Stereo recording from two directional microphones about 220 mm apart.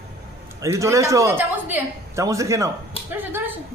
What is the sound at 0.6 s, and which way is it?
A woman's voice, 15° right (ahead or behind).